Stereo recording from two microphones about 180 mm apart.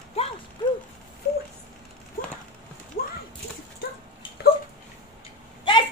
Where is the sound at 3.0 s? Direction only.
50° left (ahead or behind).